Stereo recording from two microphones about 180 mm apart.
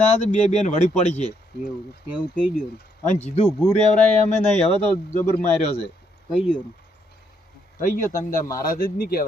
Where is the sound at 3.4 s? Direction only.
10° left (ahead or behind).